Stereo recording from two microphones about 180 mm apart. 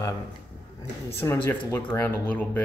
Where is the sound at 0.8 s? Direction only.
15° left (ahead or behind).